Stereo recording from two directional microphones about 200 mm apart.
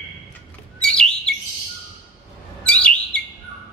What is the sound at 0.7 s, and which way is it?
Bird, 5° left (ahead or behind).